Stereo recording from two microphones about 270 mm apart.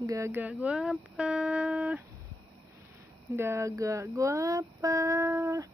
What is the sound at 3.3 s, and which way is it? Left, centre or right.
Speech, centre.